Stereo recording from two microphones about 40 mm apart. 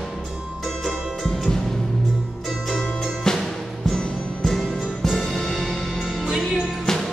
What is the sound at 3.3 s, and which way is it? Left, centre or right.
Music, centre.